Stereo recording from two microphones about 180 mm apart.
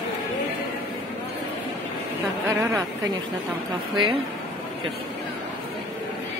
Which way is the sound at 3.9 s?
25° right (ahead or behind).